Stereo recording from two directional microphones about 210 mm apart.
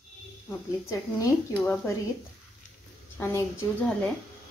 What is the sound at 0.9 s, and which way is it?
A woman's voice, 15° left (ahead or behind).